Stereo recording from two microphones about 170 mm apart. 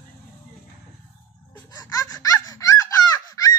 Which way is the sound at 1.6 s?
20° left (ahead or behind).